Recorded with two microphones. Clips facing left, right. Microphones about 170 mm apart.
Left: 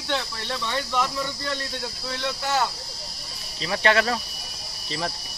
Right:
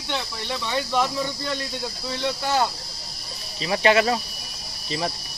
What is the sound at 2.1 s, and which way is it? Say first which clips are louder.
Speech: right 2 dB; 20° right (ahead or behind).